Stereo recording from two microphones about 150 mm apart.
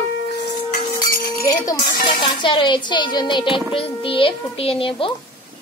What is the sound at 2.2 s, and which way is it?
Speech, 30° left (ahead or behind).